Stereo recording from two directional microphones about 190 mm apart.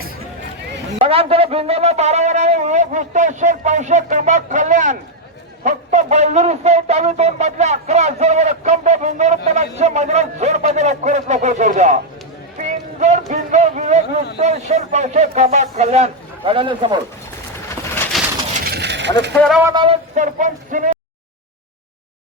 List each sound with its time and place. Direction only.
0.9 s speech: 30° right (ahead or behind)
18.1 s bird: centre (ahead or behind)
18.6 s coin: 60° right (ahead or behind)
19.5 s speech: 5° right (ahead or behind)
19.7 s a sound: 25° right (ahead or behind)
20.1 s speech: 40° right (ahead or behind)